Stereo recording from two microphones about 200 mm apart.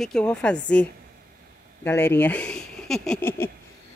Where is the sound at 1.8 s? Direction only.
10° left (ahead or behind).